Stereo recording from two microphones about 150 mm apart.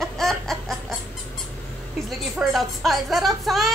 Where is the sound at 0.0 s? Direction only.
Centre (ahead or behind).